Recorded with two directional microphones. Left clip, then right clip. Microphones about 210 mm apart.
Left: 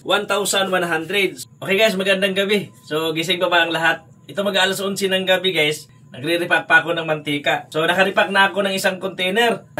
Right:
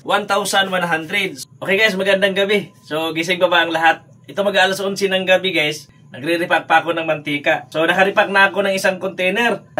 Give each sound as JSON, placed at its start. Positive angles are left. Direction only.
{"t": 0.0, "sound": "speech", "side_deg": -15}
{"t": 1.6, "sound": "speech", "side_deg": -5}